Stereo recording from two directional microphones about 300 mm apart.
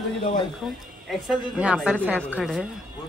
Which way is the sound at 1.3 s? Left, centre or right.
Centre.